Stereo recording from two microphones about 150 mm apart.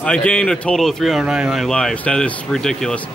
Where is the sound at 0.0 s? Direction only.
5° left (ahead or behind).